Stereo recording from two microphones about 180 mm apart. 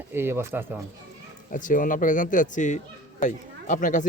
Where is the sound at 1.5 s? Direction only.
45° left (ahead or behind).